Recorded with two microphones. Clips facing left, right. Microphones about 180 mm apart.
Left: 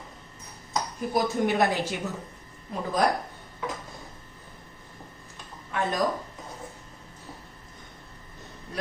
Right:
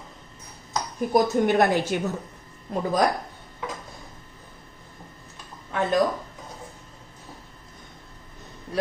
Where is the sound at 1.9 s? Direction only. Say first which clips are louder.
Right 6 dB; 55° right (ahead or behind).